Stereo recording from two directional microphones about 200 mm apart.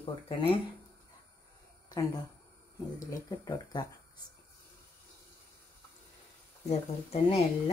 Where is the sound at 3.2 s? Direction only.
20° left (ahead or behind).